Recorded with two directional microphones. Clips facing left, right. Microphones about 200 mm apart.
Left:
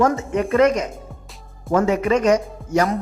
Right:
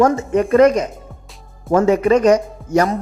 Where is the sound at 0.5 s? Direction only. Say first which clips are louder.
Right 4 dB; 35° right (ahead or behind).